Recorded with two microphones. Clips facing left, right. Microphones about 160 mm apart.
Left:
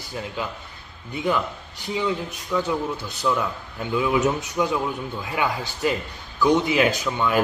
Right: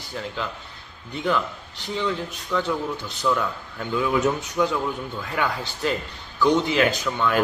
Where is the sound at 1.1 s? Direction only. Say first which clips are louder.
Even; 10° left (ahead or behind).